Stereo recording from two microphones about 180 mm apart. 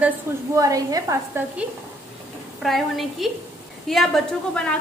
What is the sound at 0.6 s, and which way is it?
Speech, 20° right (ahead or behind).